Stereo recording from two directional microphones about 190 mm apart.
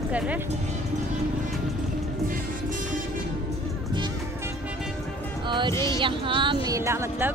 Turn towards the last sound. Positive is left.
turn(degrees=-15)  # may be behind; listen again after turning